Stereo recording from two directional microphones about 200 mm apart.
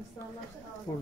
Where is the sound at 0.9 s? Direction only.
15° left (ahead or behind).